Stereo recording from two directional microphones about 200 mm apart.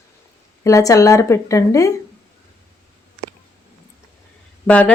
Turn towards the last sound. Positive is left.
turn(degrees=5)  # may be behind; listen again after turning